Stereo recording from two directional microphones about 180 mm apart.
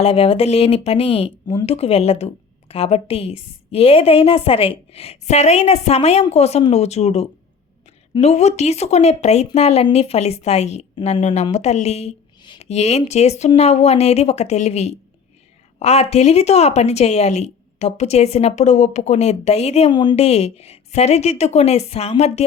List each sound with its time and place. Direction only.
0.0 s a woman's voice: 30° left (ahead or behind)